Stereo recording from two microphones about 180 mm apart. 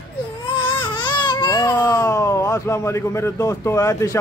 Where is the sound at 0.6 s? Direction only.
25° left (ahead or behind).